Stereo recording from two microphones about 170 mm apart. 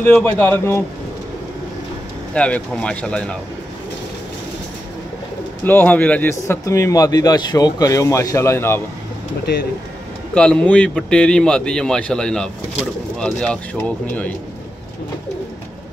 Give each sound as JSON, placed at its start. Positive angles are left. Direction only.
{"t": 0.0, "sound": "speech", "side_deg": 10}
{"t": 2.3, "sound": "speech", "side_deg": 5}
{"t": 5.6, "sound": "speech", "side_deg": 10}
{"t": 10.3, "sound": "speech", "side_deg": 5}